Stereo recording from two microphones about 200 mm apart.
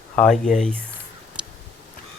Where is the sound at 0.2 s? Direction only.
Centre (ahead or behind).